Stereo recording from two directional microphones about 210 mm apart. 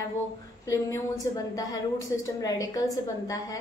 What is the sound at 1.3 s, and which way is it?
A woman's voice, 15° left (ahead or behind).